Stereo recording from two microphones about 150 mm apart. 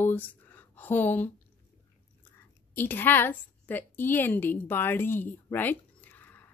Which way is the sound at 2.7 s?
15° left (ahead or behind).